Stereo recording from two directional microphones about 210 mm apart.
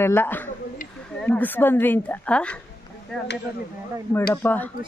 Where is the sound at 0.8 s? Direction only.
40° left (ahead or behind).